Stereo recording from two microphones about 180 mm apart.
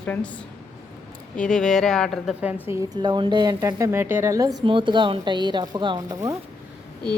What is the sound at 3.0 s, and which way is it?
A woman's voice, 25° right (ahead or behind).